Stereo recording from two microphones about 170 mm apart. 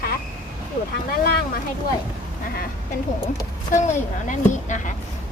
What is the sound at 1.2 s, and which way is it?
Speech, 60° left (ahead or behind).